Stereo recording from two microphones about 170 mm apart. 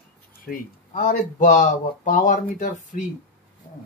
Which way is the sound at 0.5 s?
55° left (ahead or behind).